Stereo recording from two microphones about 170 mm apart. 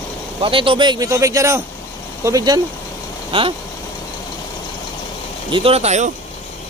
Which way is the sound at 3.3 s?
30° right (ahead or behind).